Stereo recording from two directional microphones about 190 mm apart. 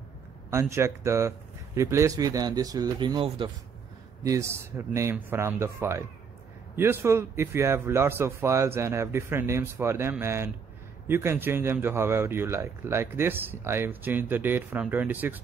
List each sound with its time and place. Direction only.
0.5 s a man's voice: 15° right (ahead or behind)
4.2 s a man's voice: 15° right (ahead or behind)